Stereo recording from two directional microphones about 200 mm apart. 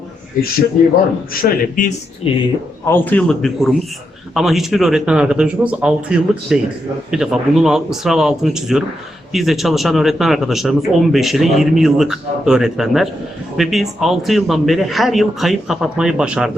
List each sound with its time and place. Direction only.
1.3 s a man's voice: 45° left (ahead or behind)
2.2 s speech: 30° left (ahead or behind)
2.8 s a man's voice: 10° left (ahead or behind)